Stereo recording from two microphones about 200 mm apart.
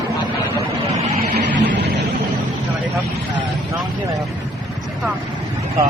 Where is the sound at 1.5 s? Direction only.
60° right (ahead or behind).